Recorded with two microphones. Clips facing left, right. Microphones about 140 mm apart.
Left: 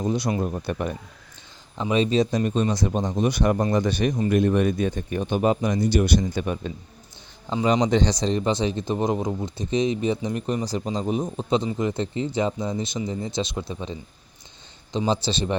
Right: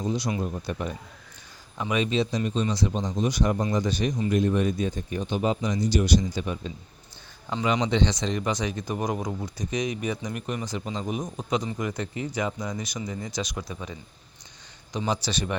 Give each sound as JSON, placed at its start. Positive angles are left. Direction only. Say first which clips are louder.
{"t": 0.0, "sound": "speech", "louder": "left 3 dB", "side_deg": 55}
{"t": 0.3, "sound": "a man's voice", "louder": "left 4 dB", "side_deg": 45}
{"t": 1.8, "sound": "a man's voice", "louder": "left 4 dB", "side_deg": 30}
{"t": 7.6, "sound": "a man's voice", "louder": "left 4 dB", "side_deg": 40}